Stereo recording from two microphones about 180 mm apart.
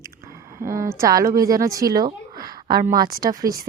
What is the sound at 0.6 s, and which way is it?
A woman's voice, 15° right (ahead or behind).